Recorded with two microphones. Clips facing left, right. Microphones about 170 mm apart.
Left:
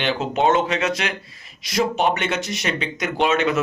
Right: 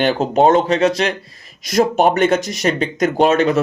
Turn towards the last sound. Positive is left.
turn(degrees=-40)  # may be behind; listen again after turning